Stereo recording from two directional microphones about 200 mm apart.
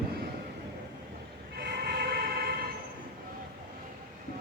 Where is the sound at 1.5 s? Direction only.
50° right (ahead or behind).